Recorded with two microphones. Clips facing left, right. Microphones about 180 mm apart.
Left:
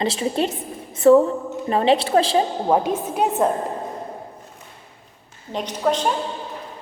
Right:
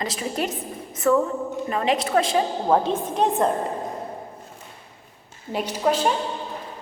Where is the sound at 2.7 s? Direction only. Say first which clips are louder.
Even; 10° left (ahead or behind).